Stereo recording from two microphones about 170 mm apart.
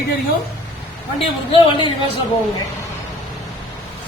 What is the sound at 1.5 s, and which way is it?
Speech, 30° left (ahead or behind).